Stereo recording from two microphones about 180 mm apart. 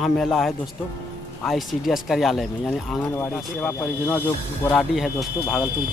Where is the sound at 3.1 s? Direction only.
10° left (ahead or behind).